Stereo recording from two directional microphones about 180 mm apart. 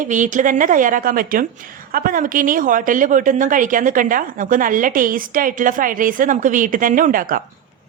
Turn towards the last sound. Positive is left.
turn(degrees=-50)  # may be behind; listen again after turning